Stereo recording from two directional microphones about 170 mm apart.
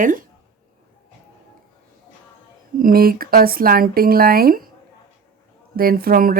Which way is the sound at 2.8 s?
60° right (ahead or behind).